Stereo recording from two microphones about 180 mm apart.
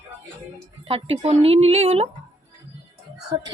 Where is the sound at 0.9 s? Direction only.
35° right (ahead or behind).